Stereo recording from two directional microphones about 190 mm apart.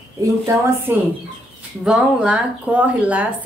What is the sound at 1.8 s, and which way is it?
A woman's voice, 5° right (ahead or behind).